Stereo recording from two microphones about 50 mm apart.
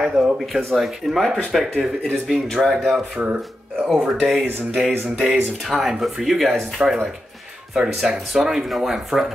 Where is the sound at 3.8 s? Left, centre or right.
Centre.